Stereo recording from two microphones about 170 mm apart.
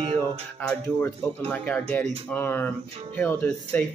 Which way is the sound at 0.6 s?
10° left (ahead or behind).